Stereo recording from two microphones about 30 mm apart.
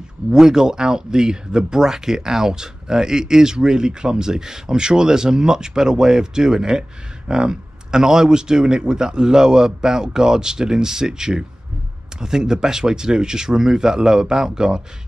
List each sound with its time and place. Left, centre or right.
0.3 s speech: centre
8.0 s speech: centre